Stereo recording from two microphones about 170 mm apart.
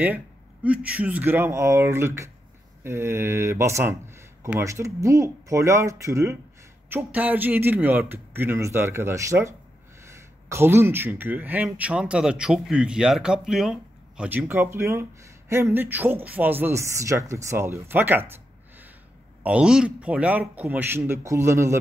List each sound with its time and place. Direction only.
0.7 s speech: 10° right (ahead or behind)
10.5 s speech: 15° right (ahead or behind)